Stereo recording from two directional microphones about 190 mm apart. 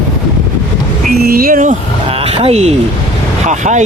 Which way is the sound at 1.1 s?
50° right (ahead or behind).